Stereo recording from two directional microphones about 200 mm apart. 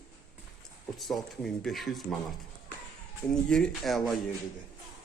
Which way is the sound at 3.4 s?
5° left (ahead or behind).